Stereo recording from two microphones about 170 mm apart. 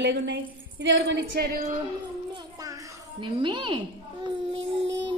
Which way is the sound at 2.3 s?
20° right (ahead or behind).